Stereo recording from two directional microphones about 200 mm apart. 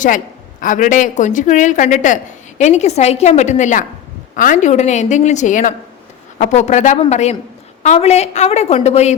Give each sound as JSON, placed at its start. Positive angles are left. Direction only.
{"t": 0.6, "sound": "a woman's voice", "side_deg": 40}